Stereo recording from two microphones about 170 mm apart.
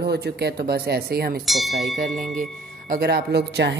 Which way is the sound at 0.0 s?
75° right (ahead or behind).